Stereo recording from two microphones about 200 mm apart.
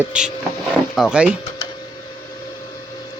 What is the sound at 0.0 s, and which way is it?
Speech, 5° right (ahead or behind).